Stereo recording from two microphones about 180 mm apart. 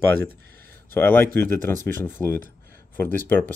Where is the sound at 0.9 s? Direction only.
10° left (ahead or behind).